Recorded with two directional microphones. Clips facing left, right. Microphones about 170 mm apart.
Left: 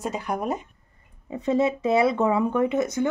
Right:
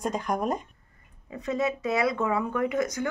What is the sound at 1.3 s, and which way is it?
Speech, 25° left (ahead or behind).